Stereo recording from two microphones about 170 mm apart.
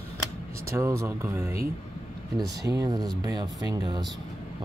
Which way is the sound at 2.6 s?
20° right (ahead or behind).